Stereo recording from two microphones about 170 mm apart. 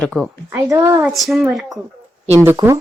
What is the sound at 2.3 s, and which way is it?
Speech, 15° right (ahead or behind).